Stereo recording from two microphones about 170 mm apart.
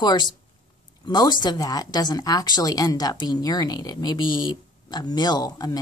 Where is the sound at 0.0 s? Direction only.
25° left (ahead or behind).